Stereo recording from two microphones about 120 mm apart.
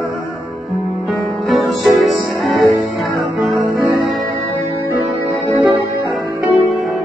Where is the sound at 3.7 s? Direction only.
30° right (ahead or behind).